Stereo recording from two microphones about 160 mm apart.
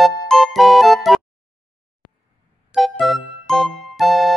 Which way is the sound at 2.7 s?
Centre (ahead or behind).